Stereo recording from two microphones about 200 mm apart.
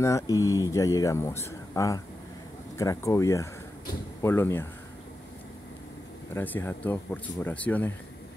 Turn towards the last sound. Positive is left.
turn(degrees=10)  # may be behind; listen again after turning